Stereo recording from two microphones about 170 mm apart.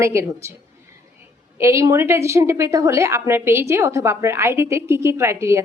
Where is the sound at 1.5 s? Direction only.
15° right (ahead or behind).